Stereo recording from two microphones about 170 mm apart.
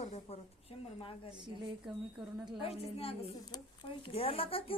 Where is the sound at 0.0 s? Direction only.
40° left (ahead or behind).